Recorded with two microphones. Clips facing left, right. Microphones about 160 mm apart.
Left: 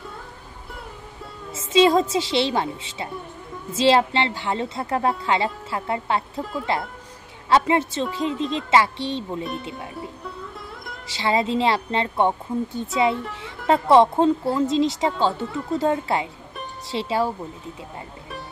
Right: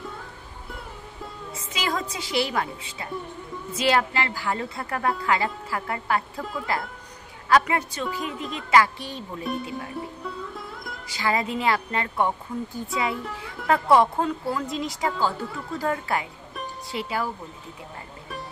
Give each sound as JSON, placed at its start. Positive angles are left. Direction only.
{"t": 1.5, "sound": "a woman's voice", "side_deg": 25}
{"t": 11.1, "sound": "a woman's voice", "side_deg": 25}